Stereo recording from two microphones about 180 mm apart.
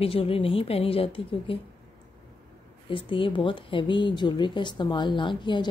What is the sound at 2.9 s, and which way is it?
Speech, 30° left (ahead or behind).